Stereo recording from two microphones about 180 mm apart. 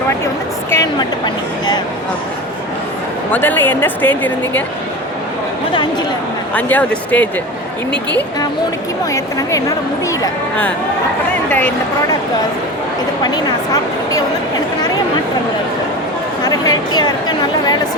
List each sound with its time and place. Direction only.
0.7 s speech: 20° left (ahead or behind)
3.3 s a woman's voice: 10° left (ahead or behind)
6.5 s a woman's voice: 10° left (ahead or behind)
9.1 s a woman's voice: 20° left (ahead or behind)
16.4 s a woman's voice: 20° left (ahead or behind)